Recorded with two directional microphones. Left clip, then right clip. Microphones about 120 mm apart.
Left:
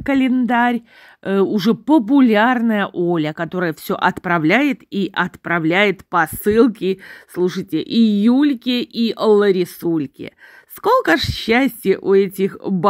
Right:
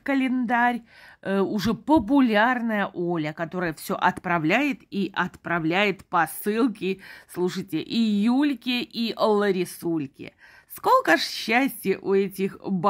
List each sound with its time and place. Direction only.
0.0 s speech: 40° left (ahead or behind)
10.8 s speech: 30° left (ahead or behind)